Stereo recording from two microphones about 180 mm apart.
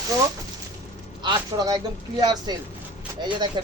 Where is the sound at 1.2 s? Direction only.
25° right (ahead or behind).